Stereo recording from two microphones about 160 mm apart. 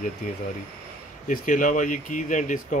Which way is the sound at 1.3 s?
55° left (ahead or behind).